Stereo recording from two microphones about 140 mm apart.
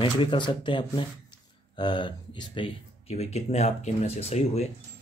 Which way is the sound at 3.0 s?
50° left (ahead or behind).